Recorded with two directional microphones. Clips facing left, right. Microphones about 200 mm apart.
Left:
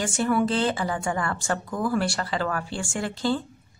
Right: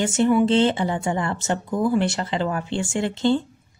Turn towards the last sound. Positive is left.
turn(degrees=-25)  # may be behind; listen again after turning